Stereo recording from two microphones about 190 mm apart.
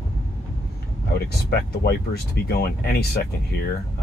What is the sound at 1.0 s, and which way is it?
Speech, 55° left (ahead or behind).